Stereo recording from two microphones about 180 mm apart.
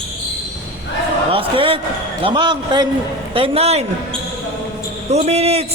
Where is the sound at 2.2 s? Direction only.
25° right (ahead or behind).